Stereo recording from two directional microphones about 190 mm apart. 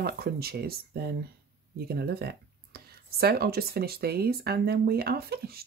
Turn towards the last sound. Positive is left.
turn(degrees=-55)  # may be behind; listen again after turning